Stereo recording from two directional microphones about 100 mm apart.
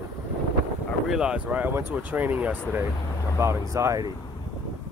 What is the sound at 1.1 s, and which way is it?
Speech, 10° right (ahead or behind).